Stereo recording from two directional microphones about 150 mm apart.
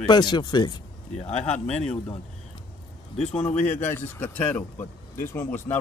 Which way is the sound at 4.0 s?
10° left (ahead or behind).